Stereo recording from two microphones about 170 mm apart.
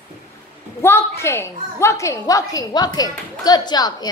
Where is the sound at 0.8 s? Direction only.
15° left (ahead or behind).